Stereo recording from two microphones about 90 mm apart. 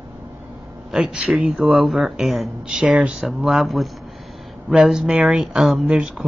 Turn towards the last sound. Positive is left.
turn(degrees=-10)  # may be behind; listen again after turning